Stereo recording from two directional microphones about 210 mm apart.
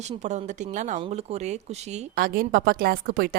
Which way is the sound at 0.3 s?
35° right (ahead or behind).